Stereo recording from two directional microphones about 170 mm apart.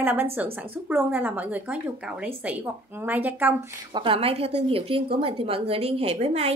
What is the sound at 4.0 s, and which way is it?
A woman's voice, 35° right (ahead or behind).